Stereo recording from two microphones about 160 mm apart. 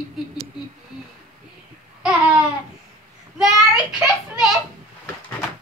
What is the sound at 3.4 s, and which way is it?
A child's voice, centre (ahead or behind).